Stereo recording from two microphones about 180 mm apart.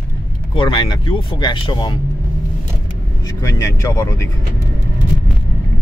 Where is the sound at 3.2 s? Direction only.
20° left (ahead or behind).